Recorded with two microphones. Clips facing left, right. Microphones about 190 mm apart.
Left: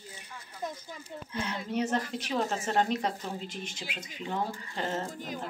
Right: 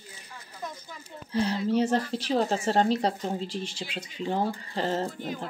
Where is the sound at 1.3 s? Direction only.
35° right (ahead or behind).